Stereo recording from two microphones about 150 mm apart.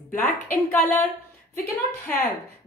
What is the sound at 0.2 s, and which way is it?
A woman's voice, 10° left (ahead or behind).